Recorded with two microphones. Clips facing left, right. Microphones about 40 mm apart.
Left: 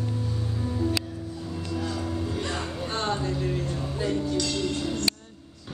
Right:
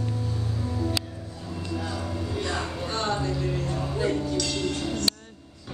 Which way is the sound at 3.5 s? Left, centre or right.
Centre.